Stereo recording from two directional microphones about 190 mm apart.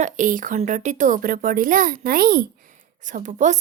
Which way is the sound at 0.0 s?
45° right (ahead or behind).